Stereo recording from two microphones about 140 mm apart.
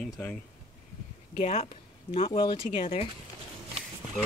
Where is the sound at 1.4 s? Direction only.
50° left (ahead or behind).